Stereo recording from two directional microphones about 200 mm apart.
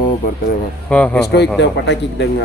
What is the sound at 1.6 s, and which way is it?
Speech, 60° left (ahead or behind).